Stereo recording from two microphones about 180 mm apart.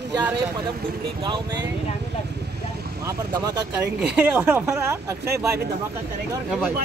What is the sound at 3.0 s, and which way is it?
Speech, 20° right (ahead or behind).